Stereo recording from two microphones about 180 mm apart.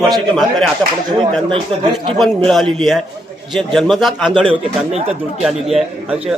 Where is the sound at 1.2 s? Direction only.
30° right (ahead or behind).